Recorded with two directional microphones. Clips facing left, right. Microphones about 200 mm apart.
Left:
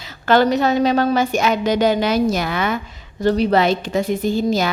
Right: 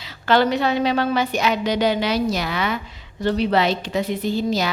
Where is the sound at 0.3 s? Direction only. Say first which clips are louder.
Left 3 dB; 45° left (ahead or behind).